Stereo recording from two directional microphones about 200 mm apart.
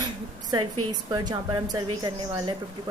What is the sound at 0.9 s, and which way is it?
A woman's voice, 20° right (ahead or behind).